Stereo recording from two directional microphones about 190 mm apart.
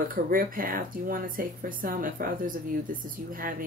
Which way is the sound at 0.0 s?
50° right (ahead or behind).